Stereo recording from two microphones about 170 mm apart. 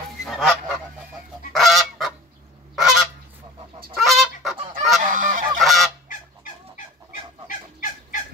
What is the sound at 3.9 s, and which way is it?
Fowl, centre (ahead or behind).